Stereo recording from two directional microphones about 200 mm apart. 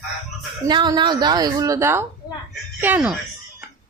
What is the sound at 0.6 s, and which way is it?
A woman's voice, 20° right (ahead or behind).